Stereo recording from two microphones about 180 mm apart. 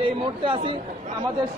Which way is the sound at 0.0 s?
30° right (ahead or behind).